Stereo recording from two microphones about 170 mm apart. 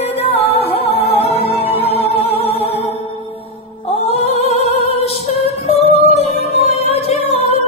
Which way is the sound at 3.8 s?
35° left (ahead or behind).